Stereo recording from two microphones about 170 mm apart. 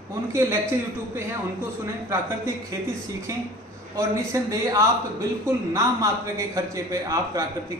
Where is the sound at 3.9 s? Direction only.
20° right (ahead or behind).